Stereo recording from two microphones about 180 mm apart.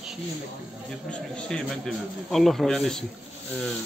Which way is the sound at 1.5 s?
Centre (ahead or behind).